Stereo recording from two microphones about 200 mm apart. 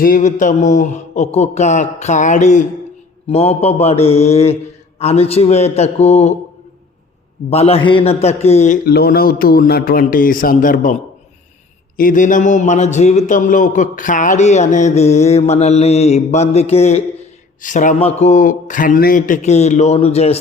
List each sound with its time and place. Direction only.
0.0 s a man's voice: 40° left (ahead or behind)
7.5 s a man's voice: 30° left (ahead or behind)
8.9 s a man's voice: 50° left (ahead or behind)
11.9 s a man's voice: 40° left (ahead or behind)